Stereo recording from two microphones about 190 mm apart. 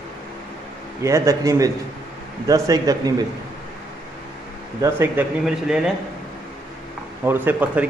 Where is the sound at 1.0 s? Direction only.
15° right (ahead or behind).